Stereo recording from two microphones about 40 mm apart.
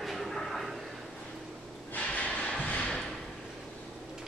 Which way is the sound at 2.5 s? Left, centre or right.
Left.